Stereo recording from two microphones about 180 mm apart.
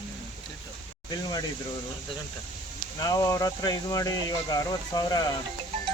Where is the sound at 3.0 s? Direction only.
20° left (ahead or behind).